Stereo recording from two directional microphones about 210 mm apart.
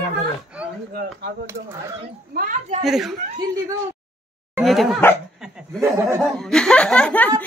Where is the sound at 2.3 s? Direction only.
40° right (ahead or behind).